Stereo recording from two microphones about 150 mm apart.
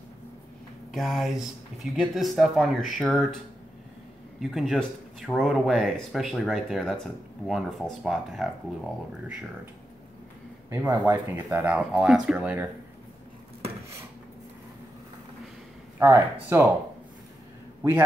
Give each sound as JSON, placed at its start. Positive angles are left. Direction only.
{"t": 0.9, "sound": "speech", "side_deg": 0}
{"t": 4.4, "sound": "speech", "side_deg": 0}
{"t": 10.7, "sound": "speech", "side_deg": -15}
{"t": 16.0, "sound": "speech", "side_deg": -15}